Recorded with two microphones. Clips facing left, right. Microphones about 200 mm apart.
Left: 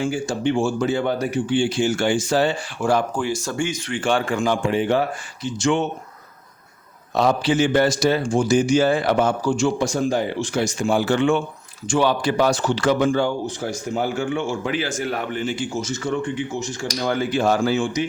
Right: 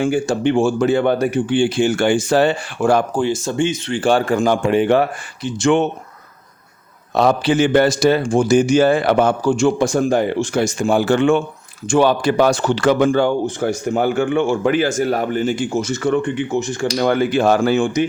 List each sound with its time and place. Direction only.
0.0 s speech: 60° right (ahead or behind)
3.2 s speech: 25° right (ahead or behind); by 4.7 s 40° right (ahead or behind)
4.7 s speech: 65° right (ahead or behind)
7.1 s speech: 60° right (ahead or behind)